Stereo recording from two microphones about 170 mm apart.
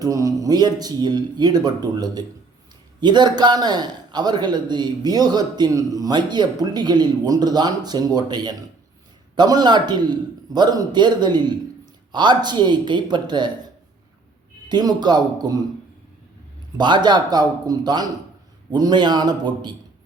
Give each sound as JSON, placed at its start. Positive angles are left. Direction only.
{"t": 0.0, "sound": "a man's voice", "side_deg": -20}
{"t": 14.7, "sound": "a man's voice", "side_deg": -25}
{"t": 16.7, "sound": "a man's voice", "side_deg": -25}